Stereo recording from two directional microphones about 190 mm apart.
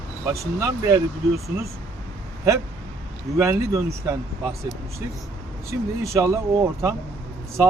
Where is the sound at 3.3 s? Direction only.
15° right (ahead or behind).